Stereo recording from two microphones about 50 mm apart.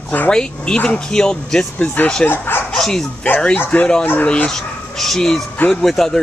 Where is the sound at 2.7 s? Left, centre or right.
Centre.